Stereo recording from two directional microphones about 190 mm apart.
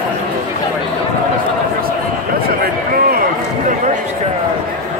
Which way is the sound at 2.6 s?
50° right (ahead or behind).